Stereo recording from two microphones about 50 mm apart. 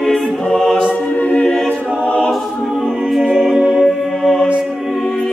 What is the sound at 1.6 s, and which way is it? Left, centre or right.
Choir, left.